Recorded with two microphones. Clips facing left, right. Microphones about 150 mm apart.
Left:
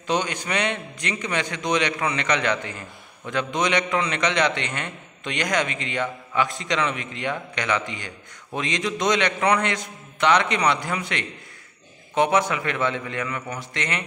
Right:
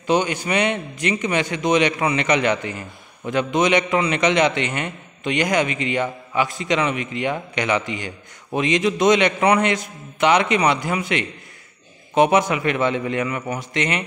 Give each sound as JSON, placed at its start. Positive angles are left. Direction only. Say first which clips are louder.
{"t": 0.0, "sound": "a man's voice", "louder": "right 5 dB", "side_deg": -5}